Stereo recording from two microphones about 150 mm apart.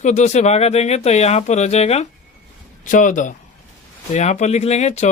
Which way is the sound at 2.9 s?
60° left (ahead or behind).